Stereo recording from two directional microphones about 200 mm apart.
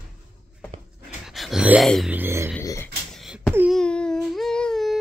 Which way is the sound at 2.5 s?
10° left (ahead or behind).